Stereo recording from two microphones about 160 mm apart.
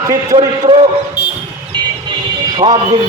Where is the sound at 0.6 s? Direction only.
35° right (ahead or behind).